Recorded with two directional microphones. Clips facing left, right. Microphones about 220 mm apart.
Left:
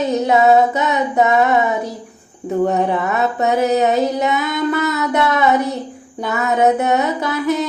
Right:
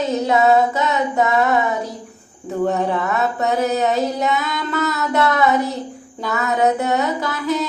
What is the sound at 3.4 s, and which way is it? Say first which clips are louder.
Music: left 4 dB; 20° left (ahead or behind).